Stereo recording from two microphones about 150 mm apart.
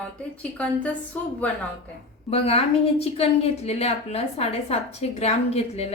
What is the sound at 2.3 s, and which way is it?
A woman's voice, 40° left (ahead or behind).